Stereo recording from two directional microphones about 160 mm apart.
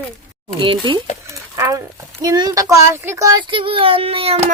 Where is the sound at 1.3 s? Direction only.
20° right (ahead or behind).